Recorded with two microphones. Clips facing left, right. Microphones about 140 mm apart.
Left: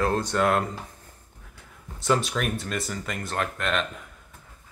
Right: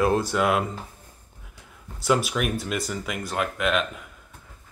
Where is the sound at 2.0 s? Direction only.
5° right (ahead or behind).